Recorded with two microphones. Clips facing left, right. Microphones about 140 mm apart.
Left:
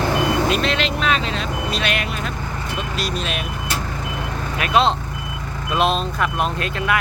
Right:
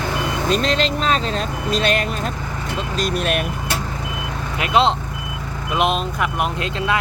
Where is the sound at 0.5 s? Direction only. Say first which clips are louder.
Right 2 dB; 35° right (ahead or behind).